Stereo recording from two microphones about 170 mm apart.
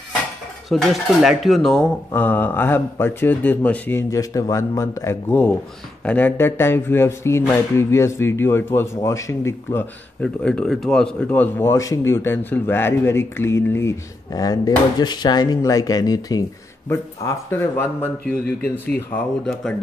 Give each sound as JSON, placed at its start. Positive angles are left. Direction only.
{"t": 0.7, "sound": "speech", "side_deg": 0}
{"t": 10.2, "sound": "speech", "side_deg": 5}
{"t": 18.2, "sound": "speech", "side_deg": 65}
{"t": 18.9, "sound": "speech", "side_deg": 5}